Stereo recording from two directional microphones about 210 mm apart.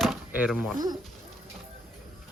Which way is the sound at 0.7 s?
20° right (ahead or behind).